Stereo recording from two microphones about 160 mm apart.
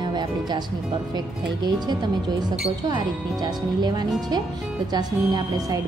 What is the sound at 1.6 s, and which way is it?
Speech, 25° right (ahead or behind).